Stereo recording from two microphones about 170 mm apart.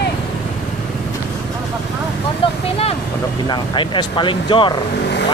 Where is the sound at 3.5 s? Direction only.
30° left (ahead or behind).